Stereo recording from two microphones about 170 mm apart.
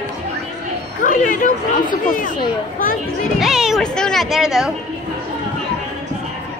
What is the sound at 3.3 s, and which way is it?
Speech, 5° right (ahead or behind).